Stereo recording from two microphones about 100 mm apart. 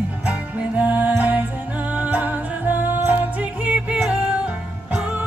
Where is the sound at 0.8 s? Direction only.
15° right (ahead or behind).